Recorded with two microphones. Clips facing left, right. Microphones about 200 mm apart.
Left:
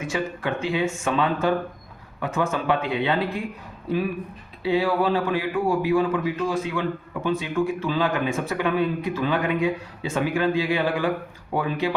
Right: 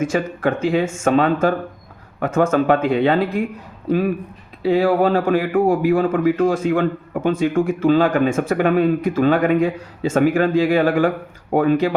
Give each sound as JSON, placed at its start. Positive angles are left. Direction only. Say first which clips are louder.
{"t": 0.0, "sound": "speech", "louder": "right 7 dB", "side_deg": -45}
{"t": 4.6, "sound": "speech", "louder": "right 6 dB", "side_deg": -45}